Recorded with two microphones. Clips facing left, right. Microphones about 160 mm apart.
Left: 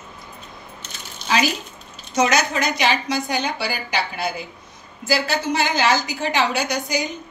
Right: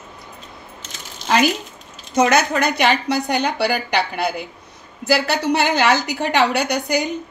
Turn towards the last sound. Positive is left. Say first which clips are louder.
# right 3 dB
turn(degrees=-60)  # may be behind; listen again after turning